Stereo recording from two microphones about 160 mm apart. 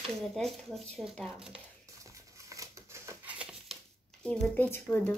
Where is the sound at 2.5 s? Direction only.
20° right (ahead or behind).